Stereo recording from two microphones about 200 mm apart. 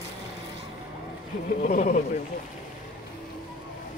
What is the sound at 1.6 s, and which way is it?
Speech, 40° left (ahead or behind).